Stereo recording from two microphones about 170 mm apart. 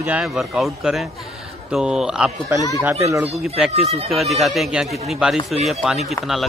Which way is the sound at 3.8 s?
35° right (ahead or behind).